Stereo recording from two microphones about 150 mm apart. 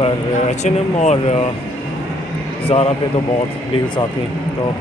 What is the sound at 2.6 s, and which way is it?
A man's voice, 40° left (ahead or behind).